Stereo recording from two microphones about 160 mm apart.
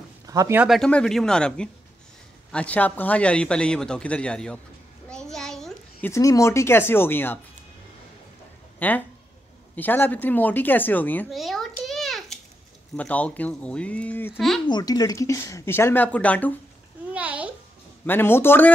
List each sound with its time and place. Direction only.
0.3 s speech: 20° right (ahead or behind)
0.6 s a man's voice: centre (ahead or behind)
8.7 s a man's voice: 10° left (ahead or behind)
11.2 s babbling: centre (ahead or behind)
12.9 s a man's voice: 10° left (ahead or behind)
14.7 s a man's voice: 25° left (ahead or behind); by 16.5 s 10° left (ahead or behind)
17.1 s a sound: 10° right (ahead or behind)
18.0 s a man's voice: 15° left (ahead or behind)